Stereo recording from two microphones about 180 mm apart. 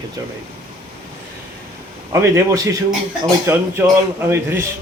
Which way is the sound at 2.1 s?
15° right (ahead or behind).